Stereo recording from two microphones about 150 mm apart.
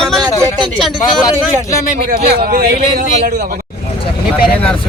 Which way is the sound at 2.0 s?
80° right.